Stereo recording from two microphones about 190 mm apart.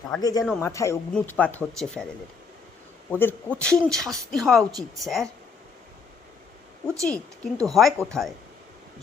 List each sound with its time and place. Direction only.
0.2 s speech: 20° left (ahead or behind); by 2.0 s 5° left (ahead or behind)
3.1 s speech: 10° left (ahead or behind)
7.0 s speech: 5° left (ahead or behind)